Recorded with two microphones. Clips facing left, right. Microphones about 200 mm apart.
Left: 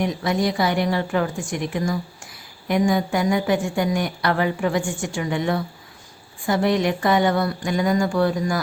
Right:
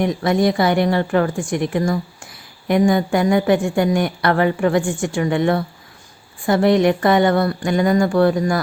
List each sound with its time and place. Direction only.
0.0 s a woman's voice: 55° right (ahead or behind)